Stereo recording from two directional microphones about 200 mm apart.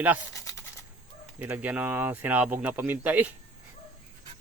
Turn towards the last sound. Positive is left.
turn(degrees=-10)  # may be behind; listen again after turning